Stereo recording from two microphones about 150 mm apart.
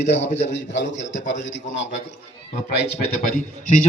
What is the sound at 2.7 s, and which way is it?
Speech, 90° left.